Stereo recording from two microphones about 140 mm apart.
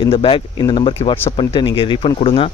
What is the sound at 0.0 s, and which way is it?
Speech, 40° left (ahead or behind).